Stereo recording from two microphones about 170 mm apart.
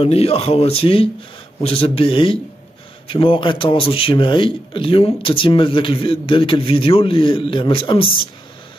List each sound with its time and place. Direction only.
0.0 s a man's voice: 35° left (ahead or behind)